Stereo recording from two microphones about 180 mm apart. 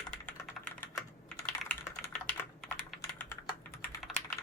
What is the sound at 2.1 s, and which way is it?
Typing, 5° left (ahead or behind).